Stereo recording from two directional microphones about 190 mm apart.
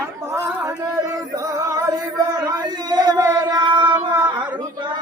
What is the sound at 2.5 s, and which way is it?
Singing, 20° right (ahead or behind).